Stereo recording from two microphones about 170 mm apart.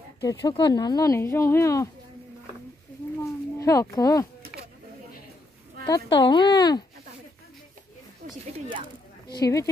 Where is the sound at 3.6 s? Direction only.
20° left (ahead or behind).